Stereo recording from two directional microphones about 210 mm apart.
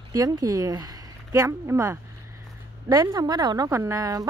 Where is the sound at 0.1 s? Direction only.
15° right (ahead or behind).